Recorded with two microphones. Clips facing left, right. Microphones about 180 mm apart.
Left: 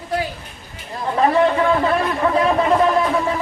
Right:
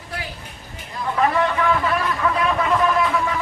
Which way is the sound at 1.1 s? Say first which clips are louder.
Left 4 dB; 35° left (ahead or behind).